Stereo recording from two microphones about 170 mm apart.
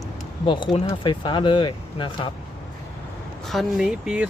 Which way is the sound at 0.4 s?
30° left (ahead or behind).